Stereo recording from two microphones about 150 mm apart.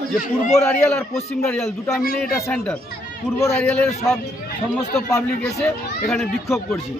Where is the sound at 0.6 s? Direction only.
10° left (ahead or behind).